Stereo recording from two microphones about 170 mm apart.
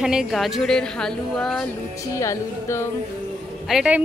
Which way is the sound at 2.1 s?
15° left (ahead or behind).